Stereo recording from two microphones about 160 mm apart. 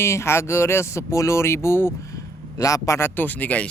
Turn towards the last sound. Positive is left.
turn(degrees=10)  # may be behind; listen again after turning